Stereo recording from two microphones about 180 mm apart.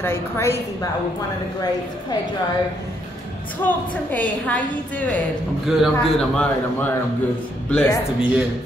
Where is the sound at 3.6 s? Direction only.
10° left (ahead or behind).